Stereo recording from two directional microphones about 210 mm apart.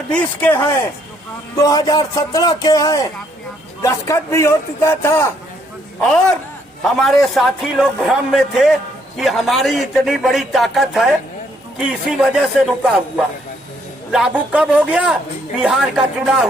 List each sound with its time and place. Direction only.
0.1 s speech: 5° left (ahead or behind)
6.8 s a man's voice: centre (ahead or behind)